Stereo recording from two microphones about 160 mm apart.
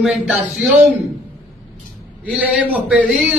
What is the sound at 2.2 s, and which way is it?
A man's voice, 10° right (ahead or behind).